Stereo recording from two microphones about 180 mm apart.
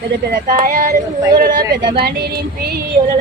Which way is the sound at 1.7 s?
25° right (ahead or behind).